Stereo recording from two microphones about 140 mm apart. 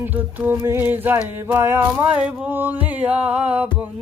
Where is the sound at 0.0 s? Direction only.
10° right (ahead or behind).